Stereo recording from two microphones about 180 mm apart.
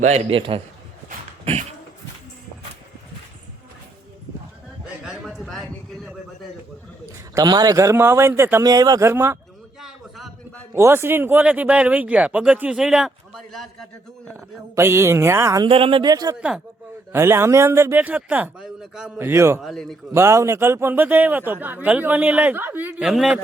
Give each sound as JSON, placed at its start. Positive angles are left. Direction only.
{"t": 0.0, "sound": "a man's voice", "side_deg": -35}
{"t": 5.0, "sound": "a sound", "side_deg": 0}
{"t": 7.3, "sound": "speech", "side_deg": -20}
{"t": 9.8, "sound": "a sound", "side_deg": 0}
{"t": 10.8, "sound": "speech", "side_deg": -15}
{"t": 14.3, "sound": "speech", "side_deg": -15}
{"t": 15.6, "sound": "speech", "side_deg": -30}
{"t": 19.6, "sound": "a man's voice", "side_deg": 0}
{"t": 20.1, "sound": "speech", "side_deg": -15}